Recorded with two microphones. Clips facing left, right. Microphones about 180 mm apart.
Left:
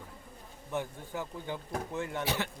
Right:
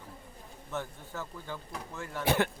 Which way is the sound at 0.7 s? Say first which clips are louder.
Left 2 dB; 15° left (ahead or behind).